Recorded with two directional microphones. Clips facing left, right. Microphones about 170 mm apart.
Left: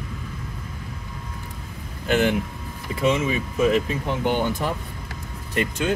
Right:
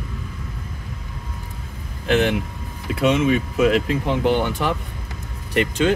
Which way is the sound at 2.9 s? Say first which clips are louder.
Right 4 dB; 75° right (ahead or behind).